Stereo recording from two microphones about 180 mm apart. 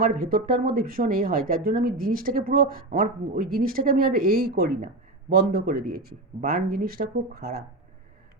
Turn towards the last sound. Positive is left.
turn(degrees=-60)  # may be behind; listen again after turning